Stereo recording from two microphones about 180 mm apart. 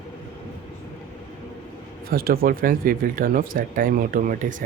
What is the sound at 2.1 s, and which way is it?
Speech, 55° right (ahead or behind).